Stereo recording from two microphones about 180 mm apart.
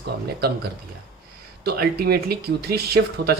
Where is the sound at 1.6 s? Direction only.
60° right (ahead or behind).